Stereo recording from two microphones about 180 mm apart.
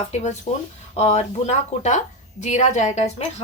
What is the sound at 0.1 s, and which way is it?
A woman's voice, 40° left (ahead or behind).